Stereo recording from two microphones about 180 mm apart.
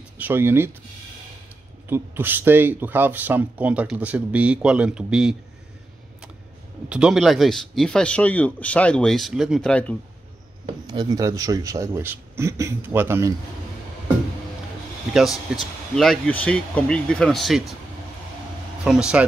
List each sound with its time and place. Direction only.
0.2 s speech: 10° right (ahead or behind)
1.9 s speech: 10° right (ahead or behind)
6.9 s speech: 5° right (ahead or behind)
10.9 s speech: 20° right (ahead or behind)
15.1 s speech: centre (ahead or behind)
18.9 s speech: 5° right (ahead or behind)